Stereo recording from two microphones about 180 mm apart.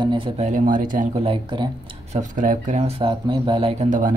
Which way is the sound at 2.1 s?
45° right (ahead or behind).